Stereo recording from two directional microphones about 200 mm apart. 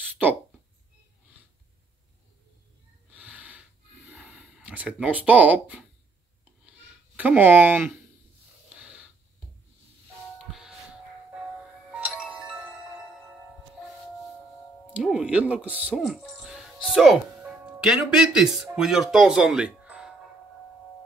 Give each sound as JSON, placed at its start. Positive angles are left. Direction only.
{"t": 3.1, "sound": "gasp", "side_deg": -5}
{"t": 7.2, "sound": "speech", "side_deg": -10}
{"t": 8.6, "sound": "snort", "side_deg": -5}
{"t": 11.9, "sound": "music", "side_deg": -5}
{"t": 15.0, "sound": "speech", "side_deg": -5}